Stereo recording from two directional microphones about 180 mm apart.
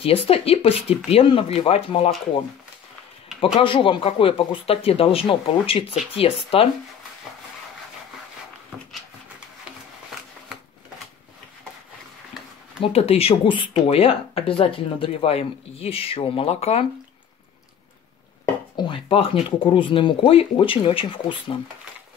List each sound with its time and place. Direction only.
0.0 s speech: 30° left (ahead or behind)
3.5 s speech: 30° left (ahead or behind)
12.8 s speech: 35° left (ahead or behind)
18.8 s speech: 30° left (ahead or behind)